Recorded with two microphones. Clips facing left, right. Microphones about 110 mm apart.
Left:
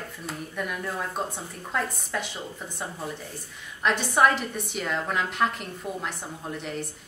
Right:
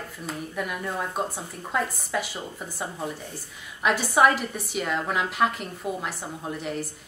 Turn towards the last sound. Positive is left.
turn(degrees=0)  # may be behind; listen again after turning